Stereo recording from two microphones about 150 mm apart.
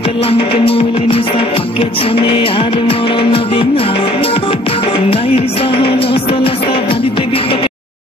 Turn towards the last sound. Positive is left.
turn(degrees=35)  # may be behind; listen again after turning